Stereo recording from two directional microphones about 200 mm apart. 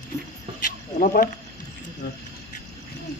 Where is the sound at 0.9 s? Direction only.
40° left (ahead or behind).